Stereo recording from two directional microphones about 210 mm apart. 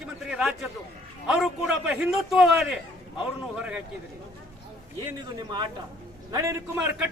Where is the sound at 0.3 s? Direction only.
5° right (ahead or behind).